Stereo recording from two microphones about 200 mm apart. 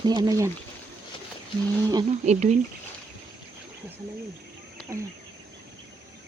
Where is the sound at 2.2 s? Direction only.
35° right (ahead or behind).